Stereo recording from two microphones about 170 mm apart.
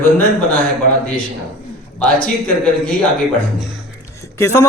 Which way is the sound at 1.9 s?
5° left (ahead or behind).